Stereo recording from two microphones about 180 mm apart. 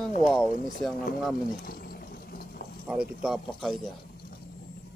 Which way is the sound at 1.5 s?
55° left (ahead or behind).